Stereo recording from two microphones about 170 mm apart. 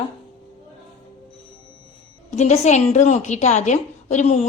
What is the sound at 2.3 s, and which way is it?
A woman's voice, 40° left (ahead or behind).